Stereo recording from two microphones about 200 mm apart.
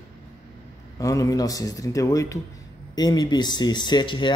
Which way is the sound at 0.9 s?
15° left (ahead or behind).